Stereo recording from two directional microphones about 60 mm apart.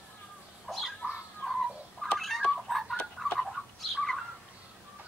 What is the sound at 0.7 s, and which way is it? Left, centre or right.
Bird, centre.